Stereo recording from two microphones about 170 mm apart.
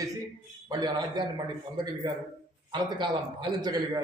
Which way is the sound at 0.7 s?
25° right (ahead or behind).